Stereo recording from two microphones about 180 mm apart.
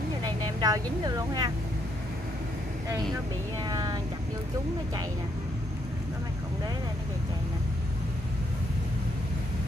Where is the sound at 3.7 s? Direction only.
25° right (ahead or behind).